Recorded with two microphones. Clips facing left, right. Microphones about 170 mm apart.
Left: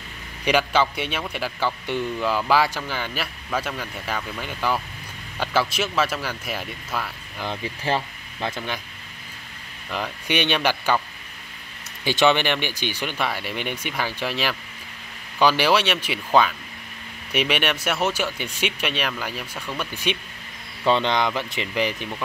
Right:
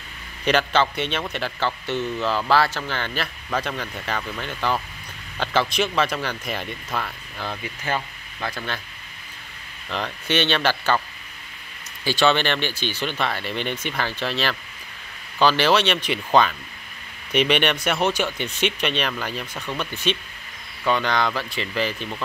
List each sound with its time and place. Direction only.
0.5 s speech: 10° left (ahead or behind)
7.6 s speech: 30° left (ahead or behind)
9.8 s speech: 10° left (ahead or behind)
12.0 s speech: 20° left (ahead or behind)
20.8 s speech: 25° left (ahead or behind)